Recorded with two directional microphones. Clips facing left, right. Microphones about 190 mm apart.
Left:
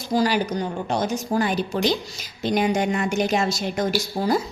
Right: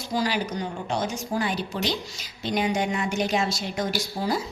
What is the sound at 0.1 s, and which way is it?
A woman's voice, 40° left (ahead or behind).